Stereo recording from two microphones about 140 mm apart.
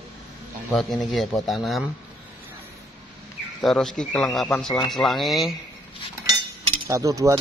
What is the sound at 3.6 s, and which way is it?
Speech, 5° left (ahead or behind).